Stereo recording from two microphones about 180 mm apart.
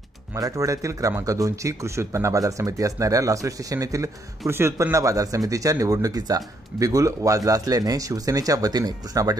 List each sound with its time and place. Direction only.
0.3 s speech: 20° right (ahead or behind)